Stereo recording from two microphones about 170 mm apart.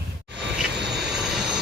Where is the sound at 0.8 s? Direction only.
80° right.